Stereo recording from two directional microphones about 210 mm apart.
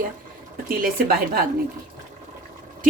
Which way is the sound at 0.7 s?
45° right (ahead or behind).